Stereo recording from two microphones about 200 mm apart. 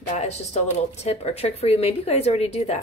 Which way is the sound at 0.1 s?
35° left (ahead or behind).